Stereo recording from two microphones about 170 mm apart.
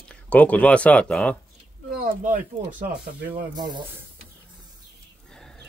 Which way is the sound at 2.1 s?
55° right (ahead or behind).